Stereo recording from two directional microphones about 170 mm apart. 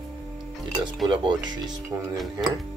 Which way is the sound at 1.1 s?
25° right (ahead or behind).